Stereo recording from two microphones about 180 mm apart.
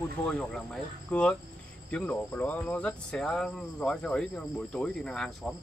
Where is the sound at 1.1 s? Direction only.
5° left (ahead or behind).